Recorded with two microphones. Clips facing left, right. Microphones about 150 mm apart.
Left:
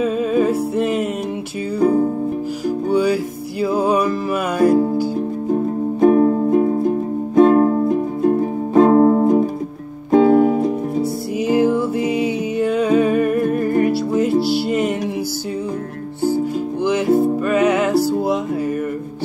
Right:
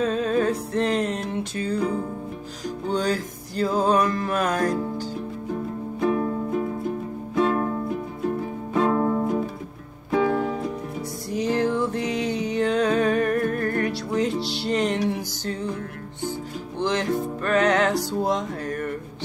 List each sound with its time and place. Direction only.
0.0 s music: 10° left (ahead or behind)
2.9 s music: 10° left (ahead or behind)
5.1 s music: 45° left (ahead or behind)
11.3 s music: 10° left (ahead or behind)
16.8 s music: 5° left (ahead or behind)